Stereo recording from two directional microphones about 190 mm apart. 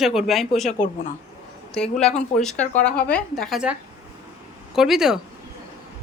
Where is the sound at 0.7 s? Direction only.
40° left (ahead or behind).